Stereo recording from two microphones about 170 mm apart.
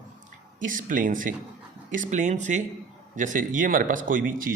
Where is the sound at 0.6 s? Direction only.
50° right (ahead or behind).